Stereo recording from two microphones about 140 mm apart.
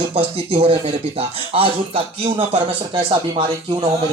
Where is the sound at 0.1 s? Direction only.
40° right (ahead or behind).